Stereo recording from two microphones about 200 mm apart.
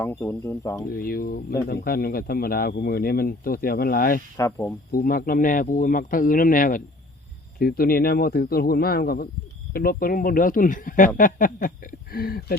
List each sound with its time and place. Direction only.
0.0 s speech: 10° left (ahead or behind)
0.9 s speech: 45° left (ahead or behind)
4.4 s speech: 15° left (ahead or behind)
4.9 s speech: 45° left (ahead or behind)